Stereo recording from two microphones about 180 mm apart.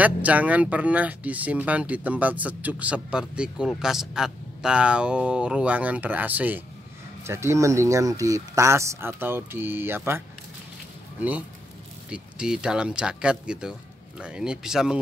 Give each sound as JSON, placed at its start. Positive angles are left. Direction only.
{"t": 0.0, "sound": "speech", "side_deg": -10}